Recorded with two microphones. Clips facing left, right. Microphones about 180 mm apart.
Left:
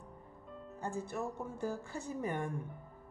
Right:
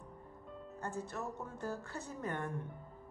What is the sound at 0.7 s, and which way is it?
Speech, 10° left (ahead or behind).